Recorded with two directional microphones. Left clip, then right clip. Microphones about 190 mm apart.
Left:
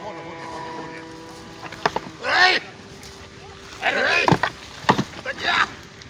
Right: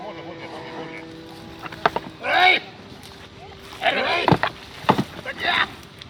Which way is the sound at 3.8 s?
45° right (ahead or behind).